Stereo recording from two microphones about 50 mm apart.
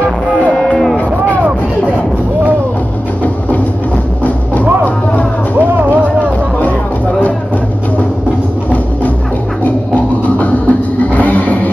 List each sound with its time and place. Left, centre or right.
0.6 s run: centre
5.7 s music: right
10.2 s music: left